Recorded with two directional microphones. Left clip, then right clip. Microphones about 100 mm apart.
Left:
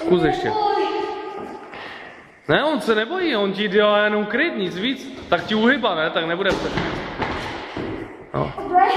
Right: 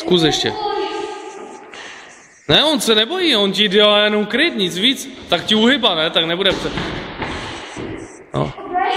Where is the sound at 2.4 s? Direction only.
15° right (ahead or behind).